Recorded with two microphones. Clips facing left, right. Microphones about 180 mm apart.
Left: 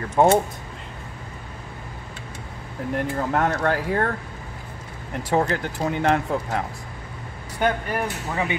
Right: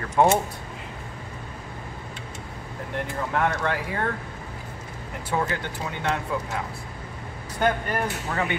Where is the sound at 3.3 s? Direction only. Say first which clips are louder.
Left 2 dB; 40° left (ahead or behind).